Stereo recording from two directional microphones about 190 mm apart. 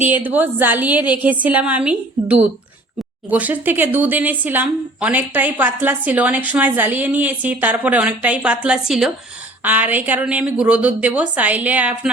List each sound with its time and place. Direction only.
0.1 s speech: 10° right (ahead or behind)
3.2 s speech: 10° right (ahead or behind)